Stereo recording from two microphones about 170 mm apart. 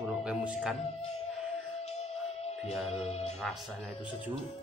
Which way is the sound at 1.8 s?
40° left (ahead or behind).